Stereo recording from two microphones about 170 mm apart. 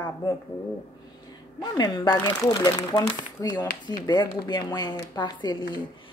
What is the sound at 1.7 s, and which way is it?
Speech, 25° left (ahead or behind).